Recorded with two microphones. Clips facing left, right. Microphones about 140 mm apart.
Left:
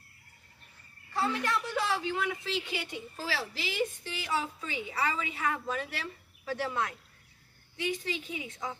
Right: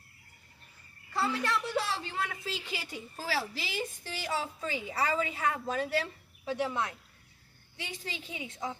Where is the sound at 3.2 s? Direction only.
40° right (ahead or behind).